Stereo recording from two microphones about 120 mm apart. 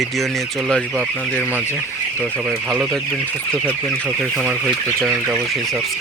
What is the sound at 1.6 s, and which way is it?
Chicken, 20° left (ahead or behind).